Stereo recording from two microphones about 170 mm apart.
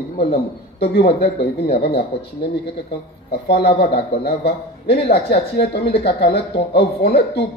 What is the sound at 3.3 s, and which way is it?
Speech, 70° left (ahead or behind).